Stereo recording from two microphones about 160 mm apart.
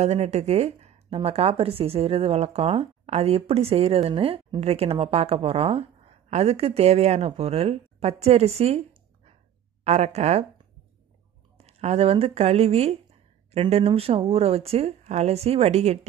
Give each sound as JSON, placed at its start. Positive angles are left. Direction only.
{"t": 0.0, "sound": "speech", "side_deg": -45}
{"t": 11.5, "sound": "speech", "side_deg": -40}